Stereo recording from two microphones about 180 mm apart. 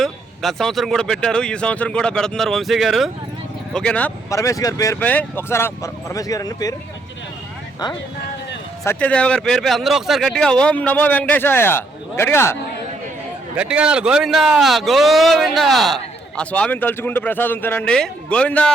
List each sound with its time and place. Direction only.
0.0 s speech: centre (ahead or behind)
4.4 s speech: 20° left (ahead or behind)
8.8 s speech: 10° left (ahead or behind)
13.6 s speech: 5° right (ahead or behind)